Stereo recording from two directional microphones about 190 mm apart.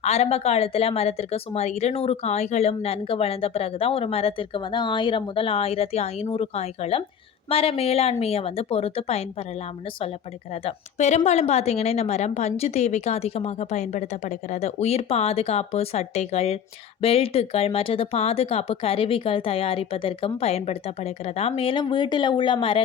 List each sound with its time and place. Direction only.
0.0 s a woman's voice: 35° left (ahead or behind)
10.5 s a woman's voice: 30° left (ahead or behind)